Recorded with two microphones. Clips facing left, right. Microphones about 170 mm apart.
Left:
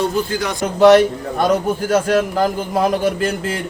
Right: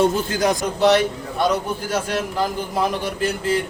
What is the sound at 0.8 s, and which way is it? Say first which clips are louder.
A man's voice: left 8 dB; 50° left (ahead or behind).